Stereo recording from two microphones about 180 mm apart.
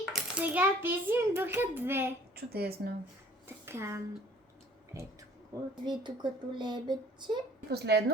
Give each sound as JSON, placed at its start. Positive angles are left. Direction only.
{"t": 0.0, "sound": "a child's voice", "side_deg": -5}
{"t": 2.3, "sound": "speech", "side_deg": -60}
{"t": 3.4, "sound": "speech", "side_deg": -15}
{"t": 5.8, "sound": "speech", "side_deg": -25}
{"t": 7.7, "sound": "speech", "side_deg": -65}